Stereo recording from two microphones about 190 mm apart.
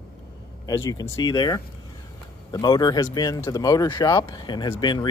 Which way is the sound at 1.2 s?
20° left (ahead or behind).